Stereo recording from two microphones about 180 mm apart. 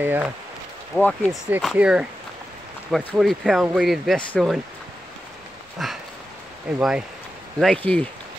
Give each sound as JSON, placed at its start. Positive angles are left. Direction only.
{"t": 0.0, "sound": "speech", "side_deg": -10}
{"t": 0.9, "sound": "speech", "side_deg": 5}
{"t": 2.9, "sound": "speech", "side_deg": 10}
{"t": 5.8, "sound": "speech", "side_deg": 0}